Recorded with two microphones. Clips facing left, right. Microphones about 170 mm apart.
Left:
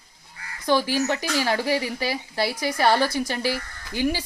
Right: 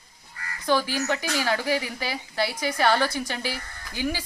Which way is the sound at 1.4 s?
35° left (ahead or behind).